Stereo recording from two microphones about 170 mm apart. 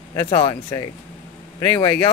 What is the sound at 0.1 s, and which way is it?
Speech, 20° left (ahead or behind).